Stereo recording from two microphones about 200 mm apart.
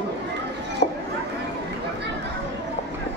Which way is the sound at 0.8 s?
45° left (ahead or behind).